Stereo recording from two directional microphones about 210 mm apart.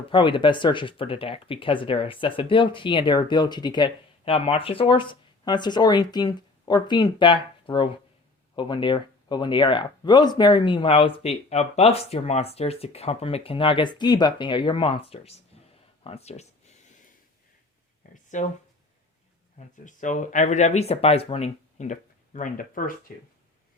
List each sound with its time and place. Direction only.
0.1 s speech: 25° left (ahead or behind)
18.1 s a sound: 35° left (ahead or behind)
19.5 s speech: 35° left (ahead or behind)